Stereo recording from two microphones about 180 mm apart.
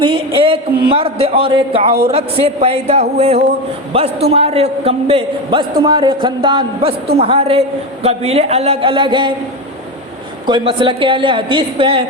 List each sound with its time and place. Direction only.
0.3 s a man's voice: 30° right (ahead or behind)
10.4 s a woman's voice: 25° right (ahead or behind)